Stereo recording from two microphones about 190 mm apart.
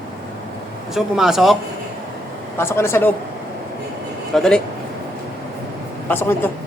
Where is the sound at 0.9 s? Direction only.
Centre (ahead or behind).